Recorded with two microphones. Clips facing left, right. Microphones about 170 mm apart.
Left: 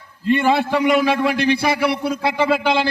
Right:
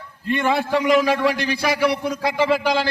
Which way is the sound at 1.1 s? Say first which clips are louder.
Left 3 dB; 25° left (ahead or behind).